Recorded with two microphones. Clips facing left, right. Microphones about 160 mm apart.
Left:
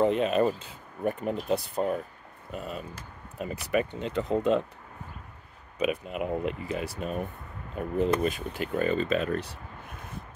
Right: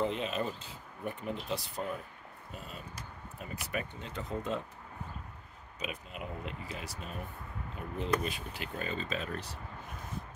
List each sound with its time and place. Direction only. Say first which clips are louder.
0.0 s speech: left 10 dB; 55° left (ahead or behind)
2.5 s speech: left 11 dB; 65° left (ahead or behind)
3.4 s speech: left 11 dB; 75° left (ahead or behind)
5.8 s speech: left 12 dB; 60° left (ahead or behind)